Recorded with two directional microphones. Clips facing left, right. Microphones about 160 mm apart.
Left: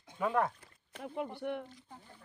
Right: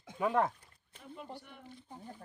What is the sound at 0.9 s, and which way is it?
Speech, 65° left (ahead or behind).